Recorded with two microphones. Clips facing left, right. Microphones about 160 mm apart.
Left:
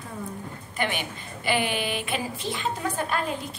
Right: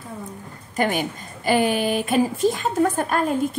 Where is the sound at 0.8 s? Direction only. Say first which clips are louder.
Right 7 dB; 40° right (ahead or behind).